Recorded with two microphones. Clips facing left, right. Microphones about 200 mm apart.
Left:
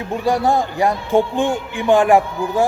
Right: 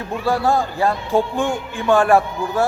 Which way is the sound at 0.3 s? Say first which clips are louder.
Left 1 dB; 15° left (ahead or behind).